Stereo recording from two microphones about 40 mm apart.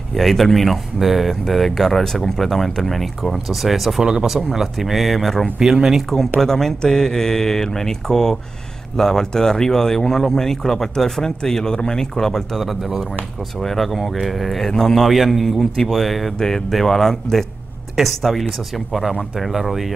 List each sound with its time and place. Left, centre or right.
0.1 s speech: centre
1.4 s speech: centre
4.0 s speech: centre
4.5 s speech: centre
5.6 s speech: centre
6.4 s speech: centre
15.1 s speech: centre
15.4 s speech: centre